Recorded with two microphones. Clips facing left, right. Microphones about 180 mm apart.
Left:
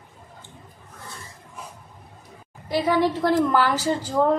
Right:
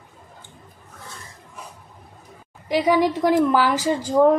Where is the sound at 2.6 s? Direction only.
15° right (ahead or behind).